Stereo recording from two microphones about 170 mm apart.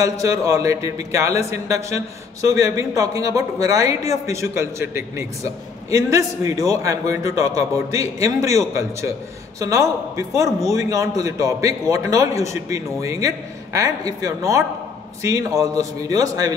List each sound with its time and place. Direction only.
0.0 s a man's voice: 20° right (ahead or behind)